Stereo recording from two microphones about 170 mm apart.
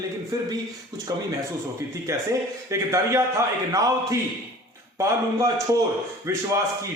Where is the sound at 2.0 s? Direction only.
15° right (ahead or behind).